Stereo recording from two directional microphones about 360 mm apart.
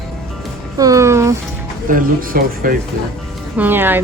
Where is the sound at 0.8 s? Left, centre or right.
Centre.